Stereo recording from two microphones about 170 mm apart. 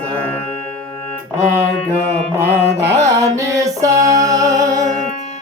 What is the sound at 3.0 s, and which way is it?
Music, 20° right (ahead or behind).